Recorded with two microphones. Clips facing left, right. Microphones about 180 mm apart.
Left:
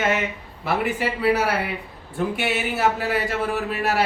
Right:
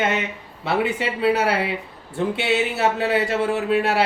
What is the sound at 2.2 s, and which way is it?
Speech, 25° right (ahead or behind).